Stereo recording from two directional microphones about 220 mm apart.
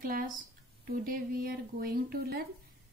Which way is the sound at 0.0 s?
40° right (ahead or behind).